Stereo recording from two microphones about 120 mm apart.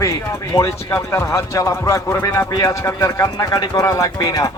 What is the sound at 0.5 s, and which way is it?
Speech, 25° left (ahead or behind).